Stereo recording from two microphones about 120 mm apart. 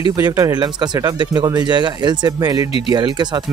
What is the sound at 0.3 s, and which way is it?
Speech, 30° right (ahead or behind).